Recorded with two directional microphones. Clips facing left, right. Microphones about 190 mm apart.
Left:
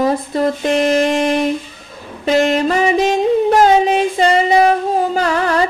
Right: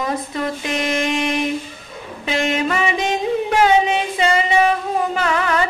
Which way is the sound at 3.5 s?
40° left (ahead or behind).